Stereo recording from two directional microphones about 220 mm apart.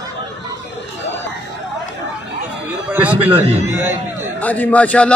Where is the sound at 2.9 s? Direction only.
10° right (ahead or behind).